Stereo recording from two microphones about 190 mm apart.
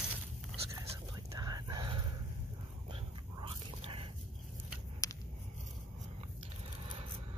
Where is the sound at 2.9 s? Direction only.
30° right (ahead or behind).